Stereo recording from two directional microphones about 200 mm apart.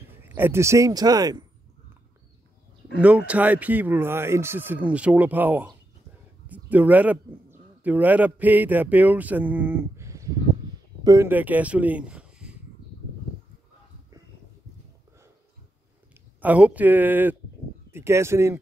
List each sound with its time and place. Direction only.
0.2 s speech: 10° right (ahead or behind)
3.0 s speech: 5° right (ahead or behind)
16.3 s speech: 5° right (ahead or behind)